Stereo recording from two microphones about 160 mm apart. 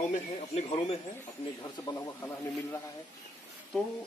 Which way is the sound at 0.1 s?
40° left (ahead or behind).